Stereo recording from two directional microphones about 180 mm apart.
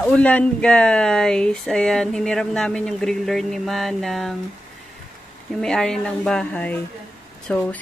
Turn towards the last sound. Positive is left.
turn(degrees=10)  # may be behind; listen again after turning